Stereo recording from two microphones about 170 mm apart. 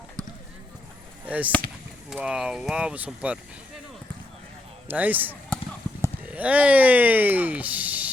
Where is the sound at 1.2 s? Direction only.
10° right (ahead or behind).